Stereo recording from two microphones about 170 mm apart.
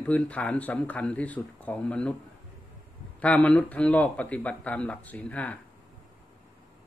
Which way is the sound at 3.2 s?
10° left (ahead or behind).